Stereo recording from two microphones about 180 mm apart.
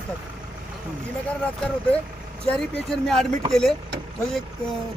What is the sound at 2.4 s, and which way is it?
Speech, 5° left (ahead or behind).